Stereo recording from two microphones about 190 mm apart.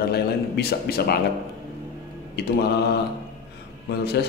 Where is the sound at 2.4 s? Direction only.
60° left (ahead or behind).